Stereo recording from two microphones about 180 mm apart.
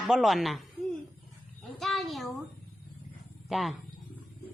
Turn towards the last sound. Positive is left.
turn(degrees=0)  # may be behind; listen again after turning